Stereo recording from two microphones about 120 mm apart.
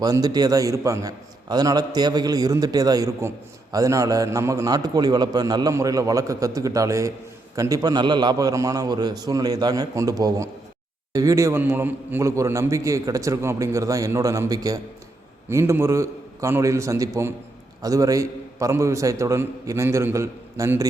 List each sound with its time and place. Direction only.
0.0 s a man's voice: 30° right (ahead or behind)